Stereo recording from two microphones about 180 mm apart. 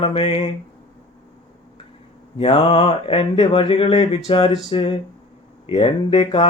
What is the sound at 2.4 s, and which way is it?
Speech, 30° left (ahead or behind).